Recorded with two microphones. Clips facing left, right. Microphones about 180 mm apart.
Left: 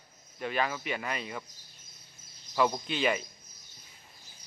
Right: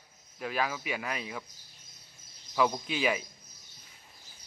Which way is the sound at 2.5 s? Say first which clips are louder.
Even; centre (ahead or behind).